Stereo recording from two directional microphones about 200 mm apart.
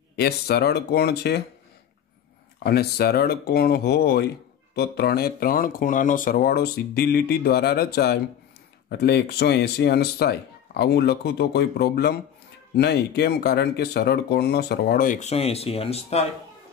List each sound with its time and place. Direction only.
0.1 s speech: 55° left (ahead or behind)
2.6 s speech: 50° left (ahead or behind); by 16.3 s 30° left (ahead or behind)